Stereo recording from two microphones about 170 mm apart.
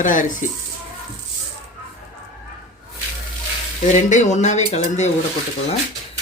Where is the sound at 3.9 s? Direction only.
45° left (ahead or behind).